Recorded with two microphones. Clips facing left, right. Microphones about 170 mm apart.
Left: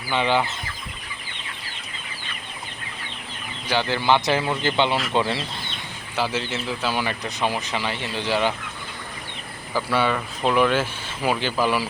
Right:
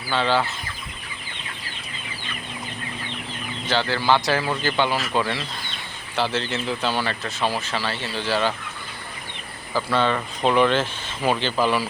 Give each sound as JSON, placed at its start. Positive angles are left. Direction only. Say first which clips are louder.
{"t": 0.1, "sound": "speech", "louder": "even", "side_deg": 15}
{"t": 3.7, "sound": "speech", "louder": "even", "side_deg": 15}
{"t": 6.1, "sound": "speech", "louder": "right 1 dB", "side_deg": 10}
{"t": 9.7, "sound": "speech", "louder": "right 1 dB", "side_deg": 10}